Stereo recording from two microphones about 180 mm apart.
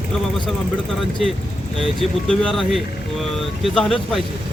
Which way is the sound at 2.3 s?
5° left (ahead or behind).